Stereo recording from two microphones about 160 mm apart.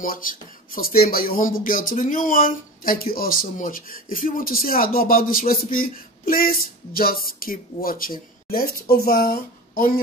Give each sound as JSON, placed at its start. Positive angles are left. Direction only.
{"t": 0.0, "sound": "speech", "side_deg": 60}